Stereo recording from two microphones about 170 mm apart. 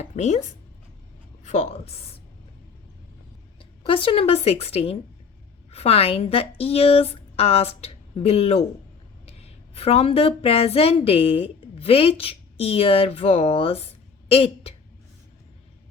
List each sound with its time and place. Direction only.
0.0 s a woman's voice: 40° left (ahead or behind)
3.6 s a woman's voice: 30° left (ahead or behind)